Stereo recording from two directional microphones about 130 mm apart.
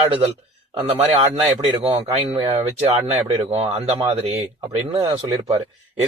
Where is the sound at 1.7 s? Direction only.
45° right (ahead or behind).